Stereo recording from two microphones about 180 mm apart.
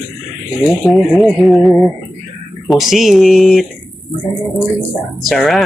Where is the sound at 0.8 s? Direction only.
Centre (ahead or behind).